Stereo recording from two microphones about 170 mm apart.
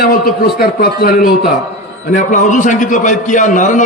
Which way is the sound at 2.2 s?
45° left (ahead or behind).